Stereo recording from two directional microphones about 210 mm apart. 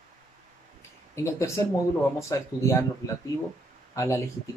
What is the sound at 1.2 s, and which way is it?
Speech, 15° left (ahead or behind).